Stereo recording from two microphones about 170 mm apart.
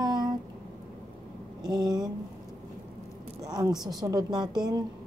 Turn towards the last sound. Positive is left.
turn(degrees=-25)  # may be behind; listen again after turning